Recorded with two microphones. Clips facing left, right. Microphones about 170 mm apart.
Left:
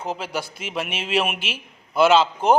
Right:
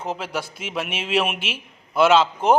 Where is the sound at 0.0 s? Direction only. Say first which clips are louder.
Even; centre (ahead or behind).